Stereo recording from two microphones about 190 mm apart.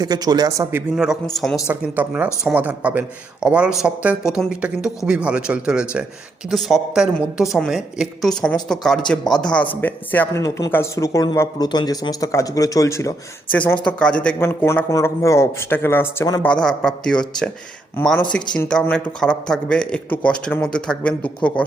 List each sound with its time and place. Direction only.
0.0 s speech: 20° right (ahead or behind); by 16.5 s 15° left (ahead or behind)
16.5 s speech: 5° left (ahead or behind)